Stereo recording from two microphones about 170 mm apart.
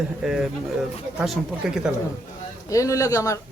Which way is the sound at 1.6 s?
5° right (ahead or behind).